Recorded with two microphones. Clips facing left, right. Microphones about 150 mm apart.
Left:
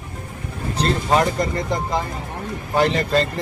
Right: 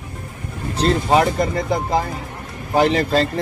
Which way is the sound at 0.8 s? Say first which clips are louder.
Right 3 dB; 5° right (ahead or behind).